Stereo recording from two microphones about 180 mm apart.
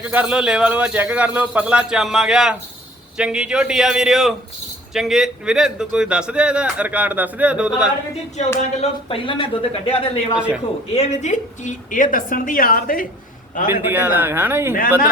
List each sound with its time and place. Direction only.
0.0 s a man's voice: 10° right (ahead or behind)
8.8 s speech: 30° left (ahead or behind)
10.3 s a man's voice: 5° right (ahead or behind)
10.9 s a woman's voice: 40° left (ahead or behind)
13.7 s a man's voice: 10° right (ahead or behind)